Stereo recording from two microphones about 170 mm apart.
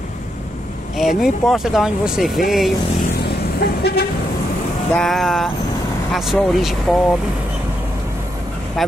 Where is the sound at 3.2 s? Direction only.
70° left (ahead or behind).